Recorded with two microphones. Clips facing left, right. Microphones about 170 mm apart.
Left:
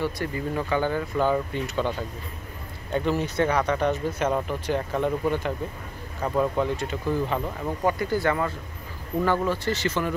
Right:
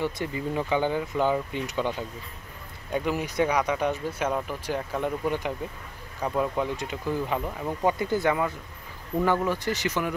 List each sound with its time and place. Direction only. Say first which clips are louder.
0.0 s speech: left 1 dB; 15° right (ahead or behind)